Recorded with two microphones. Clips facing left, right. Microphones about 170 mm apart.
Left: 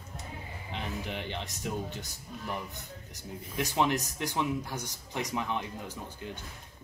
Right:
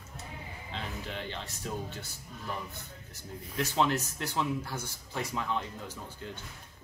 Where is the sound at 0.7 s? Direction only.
15° left (ahead or behind).